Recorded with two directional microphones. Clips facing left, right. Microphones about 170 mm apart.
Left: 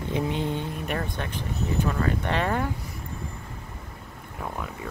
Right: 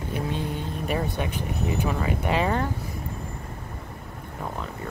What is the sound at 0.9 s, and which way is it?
Speech, 10° right (ahead or behind).